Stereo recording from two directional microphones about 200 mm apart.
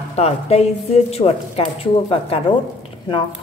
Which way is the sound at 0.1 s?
30° left (ahead or behind).